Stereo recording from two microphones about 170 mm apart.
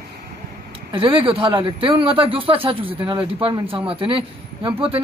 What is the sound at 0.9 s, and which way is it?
Speech, 30° right (ahead or behind).